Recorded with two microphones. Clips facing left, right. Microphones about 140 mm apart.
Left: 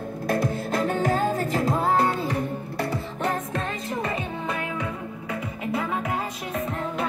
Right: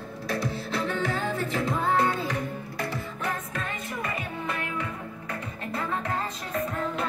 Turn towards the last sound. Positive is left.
turn(degrees=10)  # may be behind; listen again after turning